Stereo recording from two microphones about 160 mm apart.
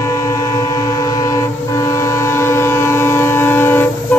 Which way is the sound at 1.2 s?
20° left (ahead or behind).